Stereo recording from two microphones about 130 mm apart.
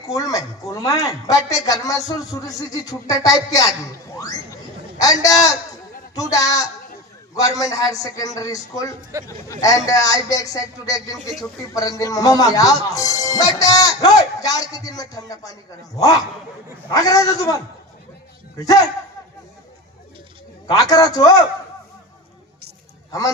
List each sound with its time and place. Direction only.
0.1 s speech: 25° left (ahead or behind)
4.9 s speech: 30° left (ahead or behind)
16.9 s speech: 25° left (ahead or behind)
20.9 s speech: 30° left (ahead or behind)